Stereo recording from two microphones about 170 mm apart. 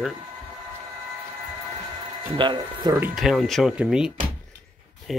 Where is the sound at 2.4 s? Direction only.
25° right (ahead or behind).